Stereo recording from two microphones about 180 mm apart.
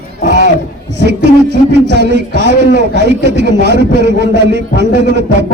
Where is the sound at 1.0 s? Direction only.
70° right (ahead or behind).